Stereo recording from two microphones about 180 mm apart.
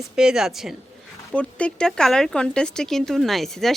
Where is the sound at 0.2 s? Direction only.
5° right (ahead or behind).